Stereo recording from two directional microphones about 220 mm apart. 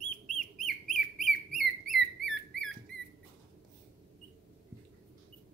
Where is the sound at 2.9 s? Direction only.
55° left (ahead or behind).